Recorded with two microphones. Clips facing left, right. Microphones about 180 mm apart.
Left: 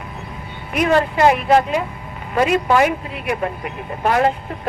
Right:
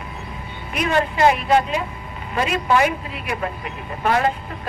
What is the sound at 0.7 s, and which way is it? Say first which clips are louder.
A woman's voice: left 4 dB; 55° left (ahead or behind).